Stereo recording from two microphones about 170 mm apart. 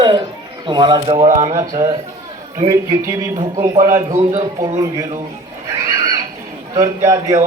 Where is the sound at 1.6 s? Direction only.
15° right (ahead or behind).